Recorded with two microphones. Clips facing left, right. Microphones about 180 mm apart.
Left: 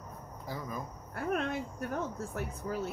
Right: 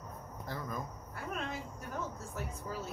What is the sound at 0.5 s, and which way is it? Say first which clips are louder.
Speech: left 1 dB; 10° left (ahead or behind).